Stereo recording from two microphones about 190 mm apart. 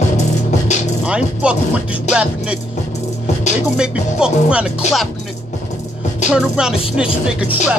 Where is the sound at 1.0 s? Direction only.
5° right (ahead or behind).